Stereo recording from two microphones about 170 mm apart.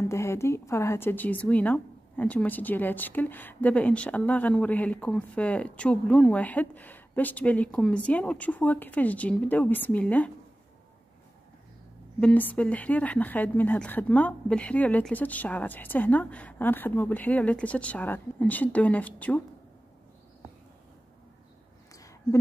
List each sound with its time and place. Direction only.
0.0 s speech: 15° left (ahead or behind)
12.2 s speech: 10° left (ahead or behind)
21.9 s a sound: 20° left (ahead or behind)